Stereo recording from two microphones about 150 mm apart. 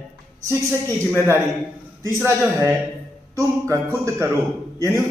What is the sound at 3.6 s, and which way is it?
Speech, 20° right (ahead or behind).